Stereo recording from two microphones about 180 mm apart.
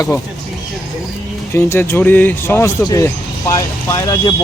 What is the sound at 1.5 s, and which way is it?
Speech, 15° left (ahead or behind).